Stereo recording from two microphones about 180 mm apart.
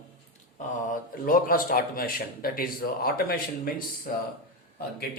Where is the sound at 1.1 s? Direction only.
50° left (ahead or behind).